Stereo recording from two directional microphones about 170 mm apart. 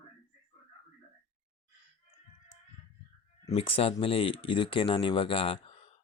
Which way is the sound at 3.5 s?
35° left (ahead or behind).